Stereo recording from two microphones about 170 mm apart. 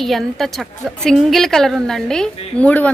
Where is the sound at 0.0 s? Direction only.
Centre (ahead or behind).